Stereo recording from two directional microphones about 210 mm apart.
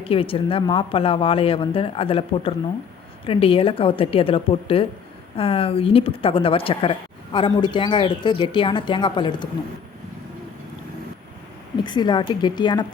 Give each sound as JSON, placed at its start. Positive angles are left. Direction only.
{"t": 0.0, "sound": "speech", "side_deg": 25}
{"t": 11.8, "sound": "speech", "side_deg": 20}